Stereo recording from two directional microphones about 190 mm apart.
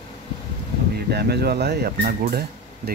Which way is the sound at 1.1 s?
60° right (ahead or behind).